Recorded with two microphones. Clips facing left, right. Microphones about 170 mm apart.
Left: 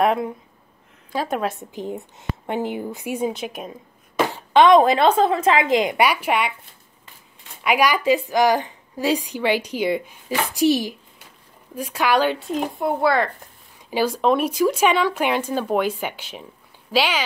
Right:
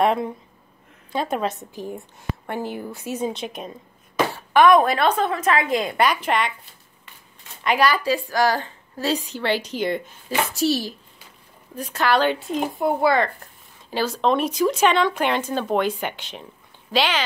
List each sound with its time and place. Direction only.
0.0 s speech: 5° left (ahead or behind)
1.7 s a woman's voice: 20° left (ahead or behind)
4.3 s speech: 20° left (ahead or behind)
5.8 s a woman's voice: 15° left (ahead or behind)
7.6 s a woman's voice: 10° left (ahead or behind)
13.8 s a woman's voice: 10° left (ahead or behind)